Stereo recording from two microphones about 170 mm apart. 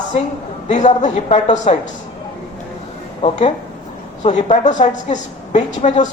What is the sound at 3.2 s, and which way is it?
Speech, 30° left (ahead or behind).